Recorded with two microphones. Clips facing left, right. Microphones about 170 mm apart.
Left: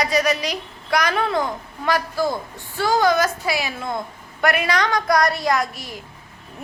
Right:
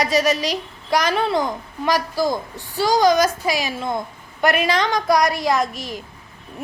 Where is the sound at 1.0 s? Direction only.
30° right (ahead or behind).